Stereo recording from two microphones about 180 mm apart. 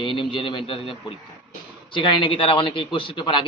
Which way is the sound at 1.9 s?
30° left (ahead or behind).